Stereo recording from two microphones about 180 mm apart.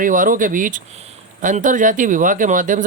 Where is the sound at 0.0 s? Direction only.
50° right (ahead or behind).